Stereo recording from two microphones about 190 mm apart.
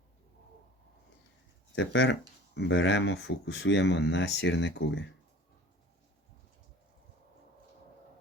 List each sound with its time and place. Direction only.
1.7 s speech: 80° left